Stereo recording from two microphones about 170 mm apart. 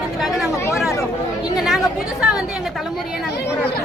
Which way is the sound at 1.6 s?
Centre (ahead or behind).